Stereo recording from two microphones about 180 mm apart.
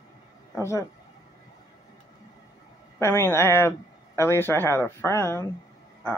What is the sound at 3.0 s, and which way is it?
Speech, 15° left (ahead or behind).